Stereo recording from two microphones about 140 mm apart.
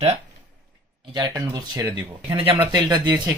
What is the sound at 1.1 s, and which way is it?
Speech, 25° right (ahead or behind).